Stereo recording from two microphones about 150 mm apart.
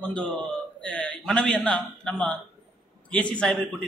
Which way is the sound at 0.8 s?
5° left (ahead or behind).